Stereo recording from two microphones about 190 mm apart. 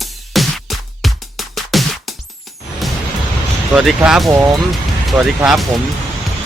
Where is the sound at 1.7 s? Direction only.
Centre (ahead or behind).